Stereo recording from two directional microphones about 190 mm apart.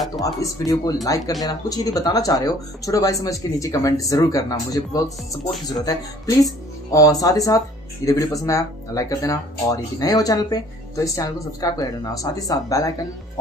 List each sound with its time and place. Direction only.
0.2 s speech: 20° left (ahead or behind)